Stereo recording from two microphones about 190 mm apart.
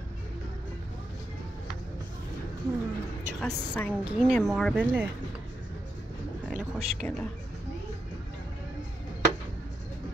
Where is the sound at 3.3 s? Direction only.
5° left (ahead or behind).